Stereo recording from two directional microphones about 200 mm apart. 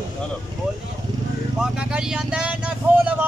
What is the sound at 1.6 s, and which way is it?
Speech, 5° right (ahead or behind).